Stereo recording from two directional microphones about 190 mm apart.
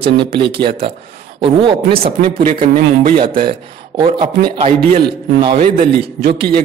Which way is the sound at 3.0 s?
30° right (ahead or behind).